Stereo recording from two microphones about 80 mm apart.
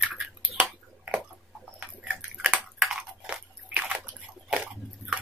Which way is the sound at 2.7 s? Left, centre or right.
Centre.